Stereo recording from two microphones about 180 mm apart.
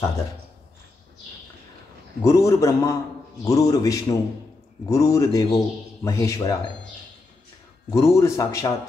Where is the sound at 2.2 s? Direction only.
15° left (ahead or behind).